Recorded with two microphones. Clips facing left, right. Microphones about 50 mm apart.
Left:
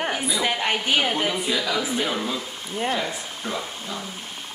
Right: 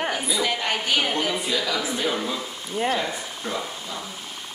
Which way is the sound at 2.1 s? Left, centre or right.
Centre.